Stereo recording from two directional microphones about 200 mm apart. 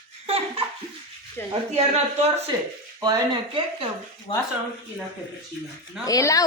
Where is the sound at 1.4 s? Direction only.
10° left (ahead or behind).